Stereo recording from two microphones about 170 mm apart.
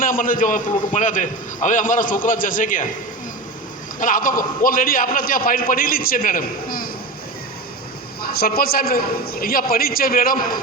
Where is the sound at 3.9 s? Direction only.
50° left (ahead or behind).